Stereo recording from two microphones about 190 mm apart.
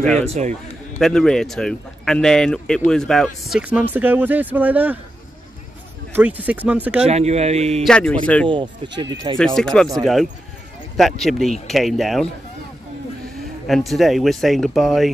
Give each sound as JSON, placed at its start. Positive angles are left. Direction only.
{"t": 0.0, "sound": "speech", "side_deg": 5}
{"t": 0.3, "sound": "speech", "side_deg": -35}
{"t": 0.9, "sound": "speech", "side_deg": 5}
{"t": 6.1, "sound": "speech", "side_deg": -10}
{"t": 7.1, "sound": "speech", "side_deg": -35}
{"t": 7.8, "sound": "speech", "side_deg": 5}
{"t": 8.5, "sound": "speech", "side_deg": -25}
{"t": 9.6, "sound": "speech", "side_deg": 5}
{"t": 11.0, "sound": "speech", "side_deg": 0}
{"t": 13.7, "sound": "speech", "side_deg": 0}